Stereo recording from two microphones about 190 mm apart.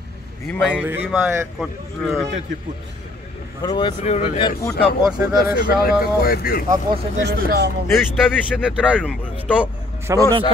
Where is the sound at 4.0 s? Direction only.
35° left (ahead or behind).